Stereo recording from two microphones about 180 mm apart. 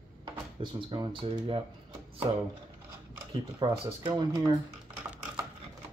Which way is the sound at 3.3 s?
25° right (ahead or behind).